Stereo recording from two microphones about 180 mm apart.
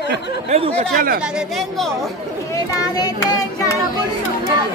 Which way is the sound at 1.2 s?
Centre (ahead or behind).